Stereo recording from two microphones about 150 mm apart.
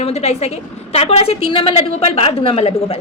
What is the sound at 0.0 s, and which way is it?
A woman's voice, 45° left (ahead or behind).